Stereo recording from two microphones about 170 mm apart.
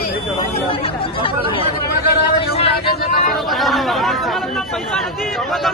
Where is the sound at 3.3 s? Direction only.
Centre (ahead or behind).